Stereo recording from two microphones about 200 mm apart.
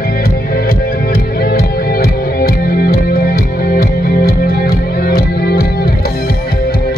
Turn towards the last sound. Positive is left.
turn(degrees=50)  # may be behind; listen again after turning